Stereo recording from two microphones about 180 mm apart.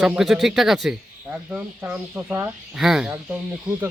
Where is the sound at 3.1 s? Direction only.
15° right (ahead or behind).